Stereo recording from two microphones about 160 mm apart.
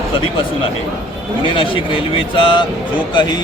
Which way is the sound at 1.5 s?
30° left (ahead or behind).